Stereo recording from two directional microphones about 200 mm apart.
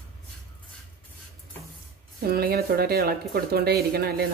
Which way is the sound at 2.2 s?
50° right (ahead or behind).